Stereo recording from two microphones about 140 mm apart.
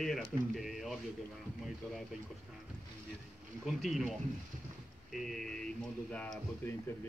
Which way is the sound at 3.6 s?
Centre (ahead or behind).